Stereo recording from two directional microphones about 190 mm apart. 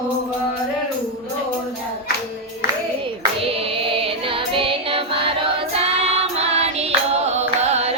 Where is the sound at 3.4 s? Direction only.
30° right (ahead or behind).